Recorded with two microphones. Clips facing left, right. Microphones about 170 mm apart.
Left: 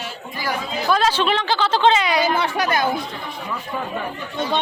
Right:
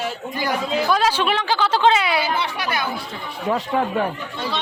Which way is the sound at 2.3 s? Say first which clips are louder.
Left 4 dB; 50° left (ahead or behind).